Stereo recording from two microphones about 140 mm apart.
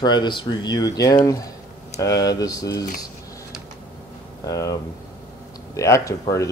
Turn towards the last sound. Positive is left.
turn(degrees=20)  # may be behind; listen again after turning